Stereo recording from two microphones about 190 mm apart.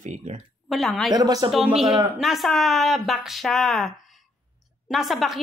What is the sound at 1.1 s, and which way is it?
Speech, 20° right (ahead or behind).